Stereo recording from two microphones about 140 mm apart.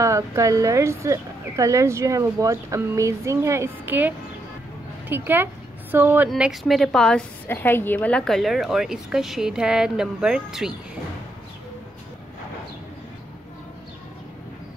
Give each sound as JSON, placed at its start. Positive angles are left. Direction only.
{"t": 0.0, "sound": "speech", "side_deg": -20}
{"t": 5.1, "sound": "a woman's voice", "side_deg": -15}